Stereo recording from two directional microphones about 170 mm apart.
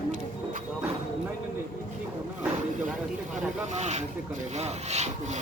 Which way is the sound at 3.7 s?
40° right (ahead or behind).